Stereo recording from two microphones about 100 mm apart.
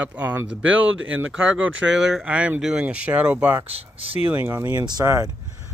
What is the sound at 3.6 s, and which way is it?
Speech, 80° right.